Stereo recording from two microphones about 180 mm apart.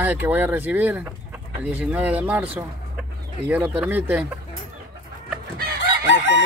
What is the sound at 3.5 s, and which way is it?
Speech, 10° right (ahead or behind).